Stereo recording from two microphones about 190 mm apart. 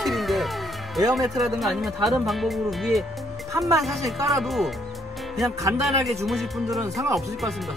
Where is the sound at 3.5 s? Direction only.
15° right (ahead or behind).